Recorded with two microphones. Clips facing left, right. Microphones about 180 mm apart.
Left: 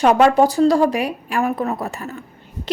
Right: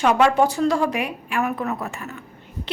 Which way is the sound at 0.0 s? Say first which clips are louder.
Left 4 dB; 40° left (ahead or behind).